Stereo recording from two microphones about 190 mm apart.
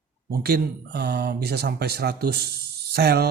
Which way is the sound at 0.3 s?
55° right (ahead or behind).